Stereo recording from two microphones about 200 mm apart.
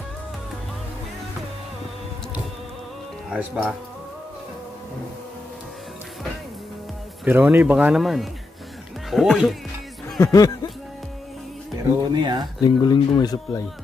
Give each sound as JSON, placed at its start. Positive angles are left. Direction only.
{"t": 3.3, "sound": "speech", "side_deg": -5}
{"t": 7.2, "sound": "speech", "side_deg": -10}
{"t": 10.0, "sound": "music", "side_deg": 15}
{"t": 12.1, "sound": "speech", "side_deg": -20}
{"t": 12.6, "sound": "speech", "side_deg": 20}